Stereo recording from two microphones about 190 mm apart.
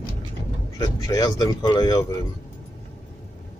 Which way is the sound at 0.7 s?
20° left (ahead or behind).